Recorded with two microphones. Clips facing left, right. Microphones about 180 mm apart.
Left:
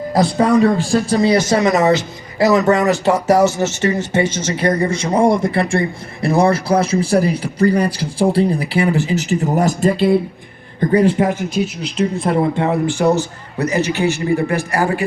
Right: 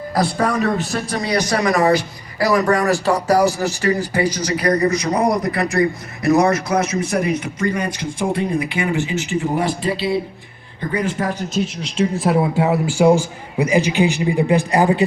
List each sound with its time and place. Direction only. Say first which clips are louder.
0.1 s a man's voice: left 5 dB; 25° left (ahead or behind); by 10.2 s 50° left (ahead or behind)
10.9 s speech: left 8 dB; 30° left (ahead or behind)
11.6 s speech: even; 5° left (ahead or behind); by 15.0 s 20° right (ahead or behind)